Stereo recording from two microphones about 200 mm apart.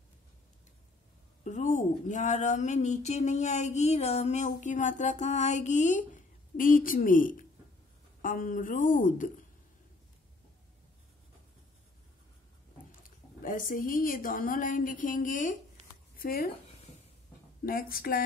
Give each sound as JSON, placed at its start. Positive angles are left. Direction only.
{"t": 1.4, "sound": "speech", "side_deg": 40}
{"t": 13.4, "sound": "speech", "side_deg": 40}
{"t": 17.6, "sound": "speech", "side_deg": 45}